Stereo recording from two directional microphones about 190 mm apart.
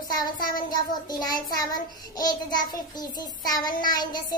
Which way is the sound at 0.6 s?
20° left (ahead or behind).